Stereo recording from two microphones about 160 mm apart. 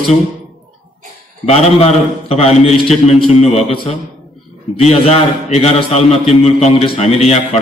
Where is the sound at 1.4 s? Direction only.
40° left (ahead or behind).